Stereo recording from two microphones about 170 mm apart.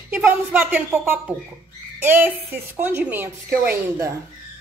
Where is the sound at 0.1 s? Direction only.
10° right (ahead or behind).